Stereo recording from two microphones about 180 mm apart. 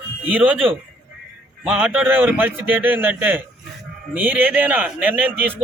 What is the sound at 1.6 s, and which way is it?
A man's voice, 5° right (ahead or behind).